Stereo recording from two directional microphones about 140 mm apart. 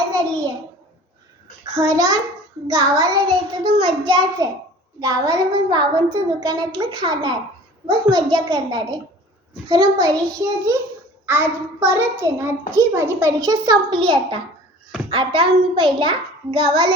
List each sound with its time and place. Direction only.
0.1 s hands: 25° right (ahead or behind)
1.7 s a child's voice: 25° right (ahead or behind)